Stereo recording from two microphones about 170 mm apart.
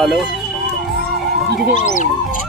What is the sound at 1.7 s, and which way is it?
Speech, 45° left (ahead or behind).